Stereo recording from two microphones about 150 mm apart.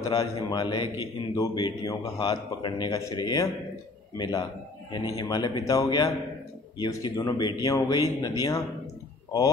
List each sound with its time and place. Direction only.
0.1 s a man's voice: 25° left (ahead or behind)